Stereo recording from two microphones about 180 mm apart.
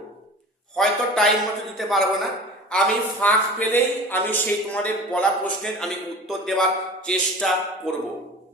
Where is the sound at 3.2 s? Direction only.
10° left (ahead or behind).